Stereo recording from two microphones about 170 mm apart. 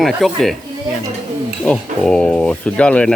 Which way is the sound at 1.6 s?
5° left (ahead or behind).